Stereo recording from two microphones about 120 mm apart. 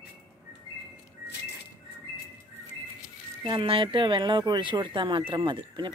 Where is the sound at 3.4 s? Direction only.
50° right (ahead or behind).